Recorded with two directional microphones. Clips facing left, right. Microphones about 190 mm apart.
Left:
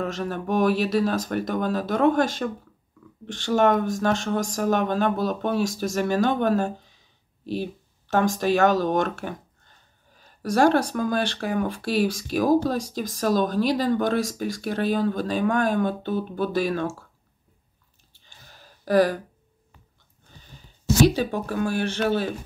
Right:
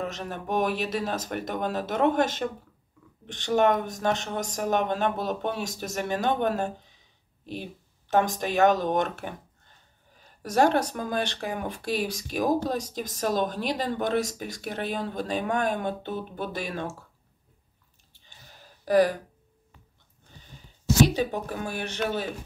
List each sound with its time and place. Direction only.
0.1 s speech: 20° right (ahead or behind)
8.1 s speech: 20° right (ahead or behind)
10.4 s speech: 20° right (ahead or behind)
18.9 s speech: 20° right (ahead or behind)
21.1 s speech: 20° right (ahead or behind)